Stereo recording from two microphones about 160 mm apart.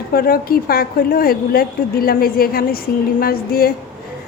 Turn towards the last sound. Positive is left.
turn(degrees=70)  # may be behind; listen again after turning